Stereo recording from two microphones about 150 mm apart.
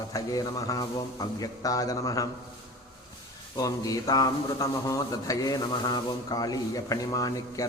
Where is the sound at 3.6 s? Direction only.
25° left (ahead or behind).